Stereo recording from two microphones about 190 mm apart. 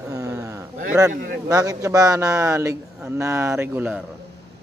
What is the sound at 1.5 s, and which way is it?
A man's voice, 15° right (ahead or behind).